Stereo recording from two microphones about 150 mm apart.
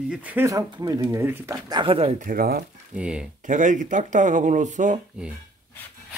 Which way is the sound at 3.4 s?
60° right (ahead or behind).